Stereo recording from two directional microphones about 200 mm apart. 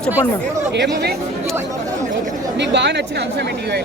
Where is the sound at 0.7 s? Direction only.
60° right (ahead or behind).